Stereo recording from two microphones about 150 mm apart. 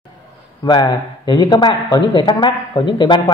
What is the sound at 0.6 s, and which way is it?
Speech, 30° left (ahead or behind).